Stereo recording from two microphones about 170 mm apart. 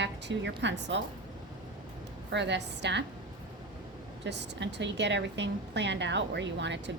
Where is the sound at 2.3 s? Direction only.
90° right.